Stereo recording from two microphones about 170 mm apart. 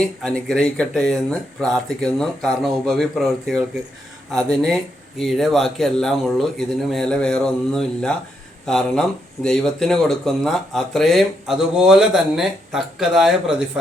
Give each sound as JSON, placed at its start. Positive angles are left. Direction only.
{"t": 0.2, "sound": "speech", "side_deg": 5}